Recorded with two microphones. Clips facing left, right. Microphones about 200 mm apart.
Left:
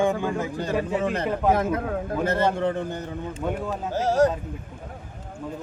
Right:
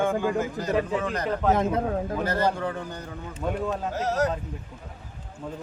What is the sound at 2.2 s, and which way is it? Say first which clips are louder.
A man's voice: left 5 dB; 25° left (ahead or behind).